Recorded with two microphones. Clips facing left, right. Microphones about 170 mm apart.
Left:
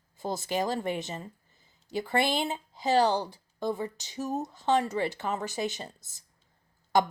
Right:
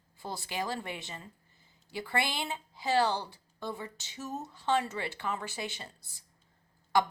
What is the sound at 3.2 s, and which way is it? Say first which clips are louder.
A woman's voice: left 7 dB; 40° left (ahead or behind).